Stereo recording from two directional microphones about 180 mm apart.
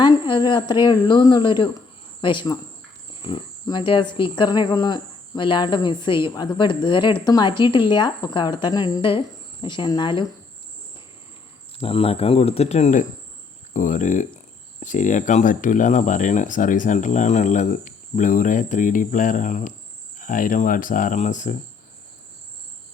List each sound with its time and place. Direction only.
0.0 s speech: 25° left (ahead or behind)
11.8 s speech: 30° left (ahead or behind)